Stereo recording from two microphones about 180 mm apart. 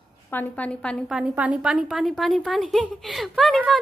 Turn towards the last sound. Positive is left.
turn(degrees=0)  # may be behind; listen again after turning